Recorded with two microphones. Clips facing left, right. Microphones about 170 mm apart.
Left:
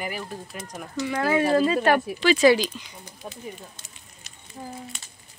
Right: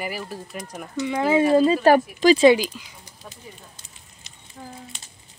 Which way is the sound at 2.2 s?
45° right (ahead or behind).